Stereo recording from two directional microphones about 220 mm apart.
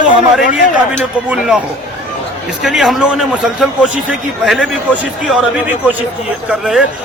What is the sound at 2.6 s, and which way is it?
A man's voice, centre (ahead or behind).